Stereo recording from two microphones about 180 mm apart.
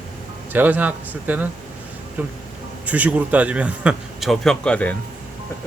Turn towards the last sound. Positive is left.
turn(degrees=5)  # may be behind; listen again after turning